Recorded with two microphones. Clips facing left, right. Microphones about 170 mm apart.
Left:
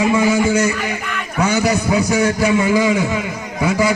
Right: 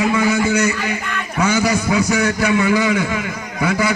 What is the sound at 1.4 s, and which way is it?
A man's voice, 35° left (ahead or behind).